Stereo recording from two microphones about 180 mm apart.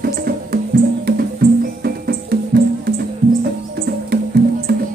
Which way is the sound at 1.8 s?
60° right (ahead or behind).